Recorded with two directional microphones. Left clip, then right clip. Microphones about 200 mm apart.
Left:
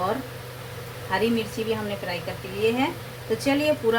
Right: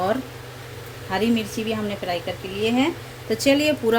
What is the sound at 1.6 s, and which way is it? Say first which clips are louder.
Speech: even; 60° right (ahead or behind).